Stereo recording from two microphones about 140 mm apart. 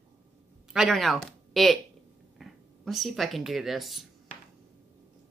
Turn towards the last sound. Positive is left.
turn(degrees=0)  # may be behind; listen again after turning